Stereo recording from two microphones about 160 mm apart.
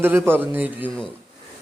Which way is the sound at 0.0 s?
15° right (ahead or behind).